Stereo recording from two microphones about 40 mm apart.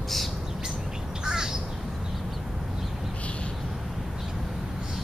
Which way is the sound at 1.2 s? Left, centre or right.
Centre.